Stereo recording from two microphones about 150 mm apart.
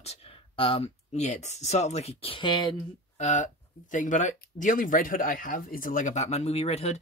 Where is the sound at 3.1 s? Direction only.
55° left (ahead or behind).